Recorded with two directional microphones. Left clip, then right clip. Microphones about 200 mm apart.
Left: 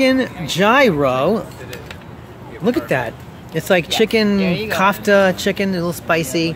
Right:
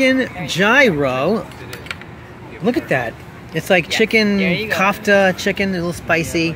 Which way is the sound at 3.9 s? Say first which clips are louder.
Right 1 dB; 45° left (ahead or behind).